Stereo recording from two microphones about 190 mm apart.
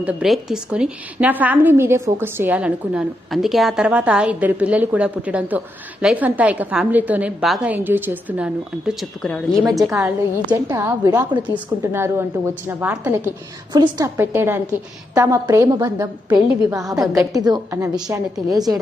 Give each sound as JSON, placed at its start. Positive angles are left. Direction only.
{"t": 0.0, "sound": "a woman's voice", "side_deg": -5}
{"t": 8.9, "sound": "speech", "side_deg": 0}
{"t": 9.9, "sound": "a woman's voice", "side_deg": -15}